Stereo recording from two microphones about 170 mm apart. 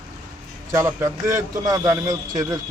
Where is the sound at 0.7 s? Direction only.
15° right (ahead or behind).